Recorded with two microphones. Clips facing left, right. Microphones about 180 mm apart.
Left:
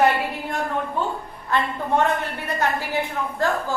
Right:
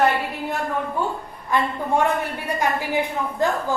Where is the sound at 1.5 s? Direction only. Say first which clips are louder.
Right 1 dB; 10° right (ahead or behind).